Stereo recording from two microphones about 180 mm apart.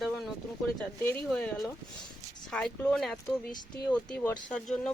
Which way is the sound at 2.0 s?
25° left (ahead or behind).